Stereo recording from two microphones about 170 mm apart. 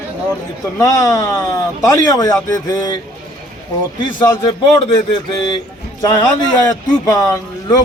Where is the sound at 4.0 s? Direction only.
25° left (ahead or behind).